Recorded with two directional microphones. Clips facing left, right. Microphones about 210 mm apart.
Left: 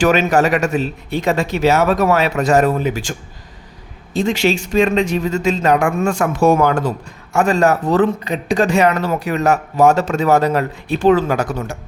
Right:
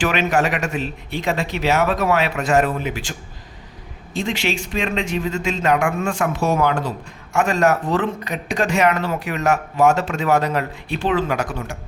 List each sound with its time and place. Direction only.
0.0 s speech: 40° left (ahead or behind)
7.3 s speech: 35° left (ahead or behind)